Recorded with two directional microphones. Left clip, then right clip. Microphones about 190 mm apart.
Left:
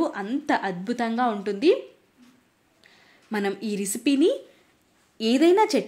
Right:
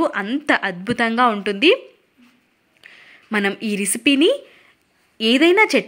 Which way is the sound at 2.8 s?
15° right (ahead or behind).